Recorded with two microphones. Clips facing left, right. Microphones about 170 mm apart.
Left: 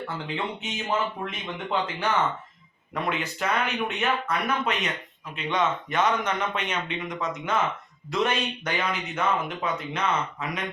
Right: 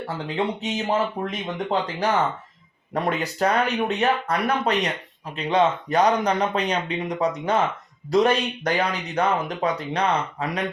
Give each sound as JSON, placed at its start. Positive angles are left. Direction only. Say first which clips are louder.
{"t": 0.6, "sound": "speech", "louder": "right 5 dB", "side_deg": -35}